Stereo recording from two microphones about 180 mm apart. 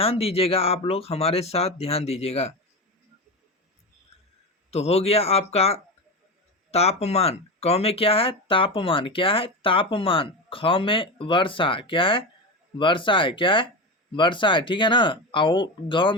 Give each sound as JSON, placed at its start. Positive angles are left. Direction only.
{"t": 0.0, "sound": "speech", "side_deg": 30}
{"t": 4.7, "sound": "speech", "side_deg": 35}